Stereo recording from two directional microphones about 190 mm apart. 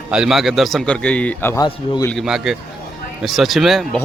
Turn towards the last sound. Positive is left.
turn(degrees=0)  # may be behind; listen again after turning